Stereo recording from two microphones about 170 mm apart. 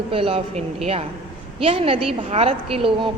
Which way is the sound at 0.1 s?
30° right (ahead or behind).